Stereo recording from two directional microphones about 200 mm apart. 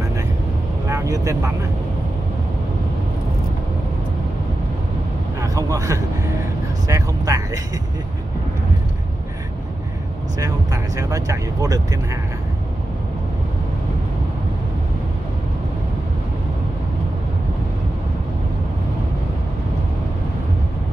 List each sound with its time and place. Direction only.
0.8 s speech: 15° right (ahead or behind)
5.4 s speech: 15° right (ahead or behind)
10.4 s speech: 15° right (ahead or behind)